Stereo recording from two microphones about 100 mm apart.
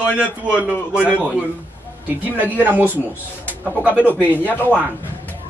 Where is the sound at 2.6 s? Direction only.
20° right (ahead or behind).